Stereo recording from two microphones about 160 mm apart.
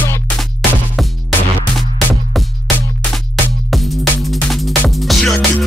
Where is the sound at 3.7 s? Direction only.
Centre (ahead or behind).